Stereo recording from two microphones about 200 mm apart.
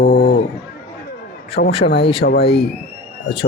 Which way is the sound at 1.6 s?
55° left (ahead or behind).